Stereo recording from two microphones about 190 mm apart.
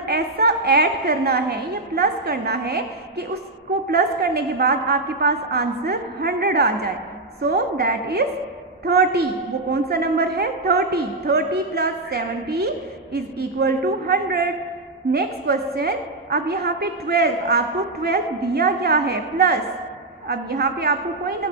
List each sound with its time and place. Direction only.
0.1 s a woman's voice: 55° right (ahead or behind)